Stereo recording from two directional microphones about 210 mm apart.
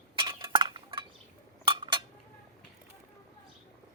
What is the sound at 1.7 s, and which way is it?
Cutlery, 25° right (ahead or behind).